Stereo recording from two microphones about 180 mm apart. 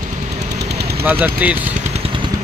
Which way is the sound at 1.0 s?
10° right (ahead or behind).